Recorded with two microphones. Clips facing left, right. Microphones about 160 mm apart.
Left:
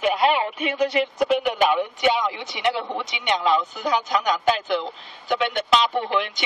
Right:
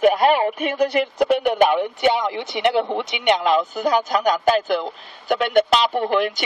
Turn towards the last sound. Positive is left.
turn(degrees=-50)  # may be behind; listen again after turning